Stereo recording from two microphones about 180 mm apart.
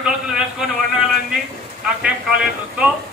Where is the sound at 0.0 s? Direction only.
Centre (ahead or behind).